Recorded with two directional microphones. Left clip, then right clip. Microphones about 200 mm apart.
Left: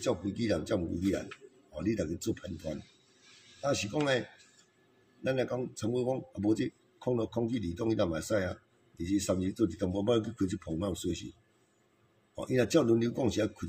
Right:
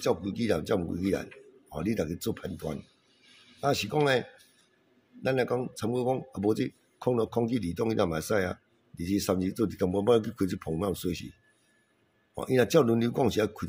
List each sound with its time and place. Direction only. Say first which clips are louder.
0.0 s speech: right 4 dB; 50° right (ahead or behind)
3.6 s speech: right 5 dB; 50° right (ahead or behind)
5.2 s speech: right 4 dB; 50° right (ahead or behind)
12.4 s speech: right 4 dB; 55° right (ahead or behind)